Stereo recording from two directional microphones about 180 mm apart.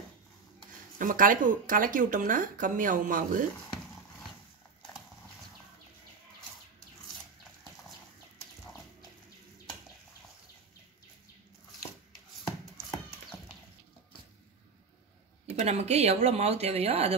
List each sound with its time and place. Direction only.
0.9 s speech: 50° right (ahead or behind)
15.5 s speech: 35° right (ahead or behind)